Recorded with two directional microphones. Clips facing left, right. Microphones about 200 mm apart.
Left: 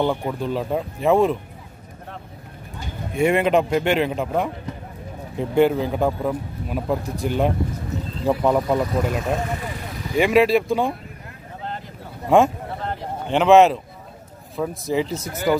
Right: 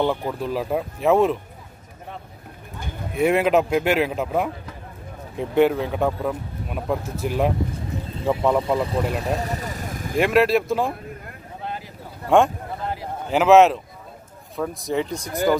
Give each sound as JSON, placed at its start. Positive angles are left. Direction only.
{"t": 0.0, "sound": "speech", "side_deg": 0}
{"t": 3.2, "sound": "speech", "side_deg": 0}
{"t": 9.2, "sound": "vehicle", "side_deg": -35}
{"t": 10.1, "sound": "speech", "side_deg": 0}
{"t": 12.3, "sound": "speech", "side_deg": 0}